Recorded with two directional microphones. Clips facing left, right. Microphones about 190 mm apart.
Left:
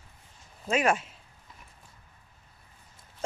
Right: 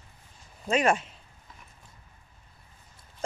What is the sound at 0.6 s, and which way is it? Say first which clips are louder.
Speech: right 1 dB; 5° left (ahead or behind).